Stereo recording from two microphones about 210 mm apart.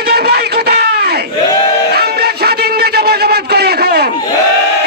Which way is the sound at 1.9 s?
50° right (ahead or behind).